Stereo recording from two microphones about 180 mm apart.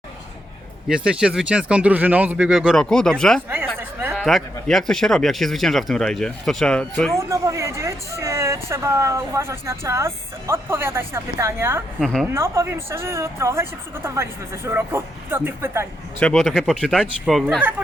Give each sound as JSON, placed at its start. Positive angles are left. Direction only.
{"t": 0.9, "sound": "speech", "side_deg": -5}
{"t": 3.8, "sound": "a sound", "side_deg": -10}
{"t": 4.2, "sound": "speech", "side_deg": 0}
{"t": 7.2, "sound": "speech", "side_deg": -15}
{"t": 11.9, "sound": "speech", "side_deg": 5}
{"t": 12.2, "sound": "speech", "side_deg": -15}
{"t": 16.2, "sound": "speech", "side_deg": 0}